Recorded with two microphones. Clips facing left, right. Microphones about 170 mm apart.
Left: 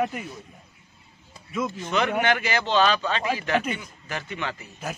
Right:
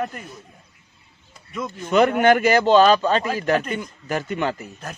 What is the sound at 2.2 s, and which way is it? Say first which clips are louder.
A man's voice: right 8 dB; 45° right (ahead or behind).